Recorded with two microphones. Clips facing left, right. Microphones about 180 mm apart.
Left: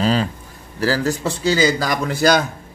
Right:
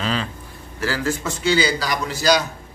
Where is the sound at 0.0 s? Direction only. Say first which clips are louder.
Left 6 dB; 40° left (ahead or behind).